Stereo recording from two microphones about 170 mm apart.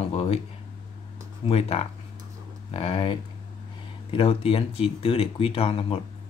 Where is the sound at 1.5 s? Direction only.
35° left (ahead or behind).